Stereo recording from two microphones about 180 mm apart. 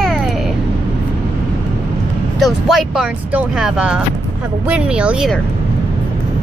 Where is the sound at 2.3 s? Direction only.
Centre (ahead or behind).